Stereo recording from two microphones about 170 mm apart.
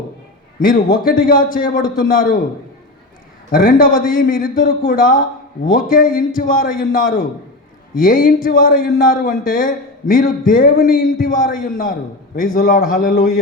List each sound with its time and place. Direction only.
0.6 s speech: 55° left (ahead or behind)
3.5 s speech: 55° left (ahead or behind)